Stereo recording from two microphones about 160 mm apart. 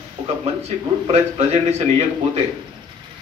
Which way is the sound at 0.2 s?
50° right (ahead or behind).